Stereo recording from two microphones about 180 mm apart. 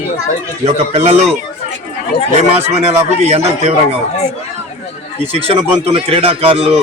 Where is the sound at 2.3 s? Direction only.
35° right (ahead or behind).